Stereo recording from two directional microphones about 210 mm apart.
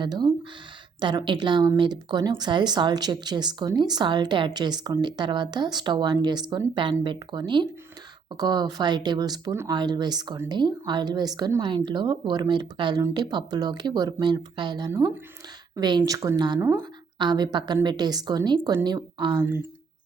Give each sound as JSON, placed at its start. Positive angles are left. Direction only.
{"t": 0.0, "sound": "speech", "side_deg": -20}